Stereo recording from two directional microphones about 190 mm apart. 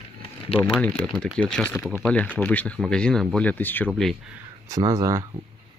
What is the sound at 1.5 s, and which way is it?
Speech, 5° left (ahead or behind).